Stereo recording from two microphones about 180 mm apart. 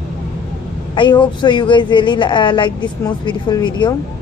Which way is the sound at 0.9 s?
25° left (ahead or behind).